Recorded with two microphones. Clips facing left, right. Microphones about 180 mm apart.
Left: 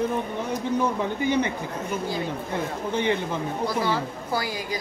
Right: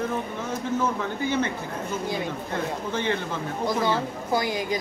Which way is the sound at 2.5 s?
15° left (ahead or behind).